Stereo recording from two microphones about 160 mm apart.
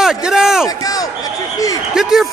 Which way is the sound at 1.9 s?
5° right (ahead or behind).